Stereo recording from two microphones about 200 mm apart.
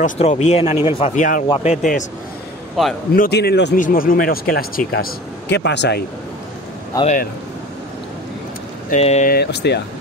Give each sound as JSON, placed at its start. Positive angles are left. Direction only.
{"t": 0.0, "sound": "speech", "side_deg": 35}
{"t": 3.1, "sound": "a man's voice", "side_deg": 50}
{"t": 3.7, "sound": "speech", "side_deg": 45}
{"t": 5.5, "sound": "a man's voice", "side_deg": 60}
{"t": 6.9, "sound": "speech", "side_deg": 15}
{"t": 8.9, "sound": "speech", "side_deg": 35}
{"t": 9.3, "sound": "a man's voice", "side_deg": 55}